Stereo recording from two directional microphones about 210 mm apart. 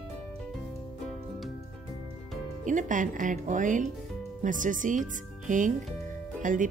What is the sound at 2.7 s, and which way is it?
Speech, 35° right (ahead or behind).